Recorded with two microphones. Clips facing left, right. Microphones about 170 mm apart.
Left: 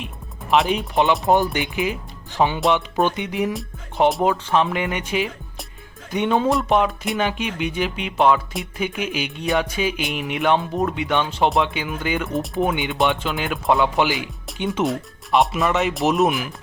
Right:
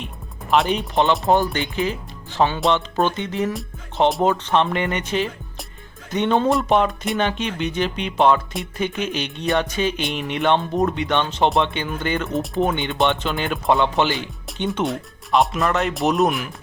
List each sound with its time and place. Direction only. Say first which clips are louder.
0.5 s speech: even; centre (ahead or behind)
1.5 s speech: even; 15° left (ahead or behind)